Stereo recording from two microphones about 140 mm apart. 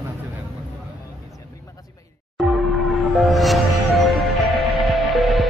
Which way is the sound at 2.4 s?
Centre (ahead or behind).